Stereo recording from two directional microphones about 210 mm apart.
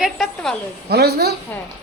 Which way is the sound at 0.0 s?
Centre (ahead or behind).